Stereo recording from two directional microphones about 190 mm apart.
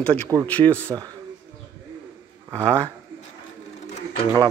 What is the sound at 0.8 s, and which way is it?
Speech, 20° right (ahead or behind).